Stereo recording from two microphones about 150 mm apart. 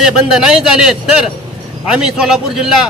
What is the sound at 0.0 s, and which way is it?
A man's voice, 5° right (ahead or behind).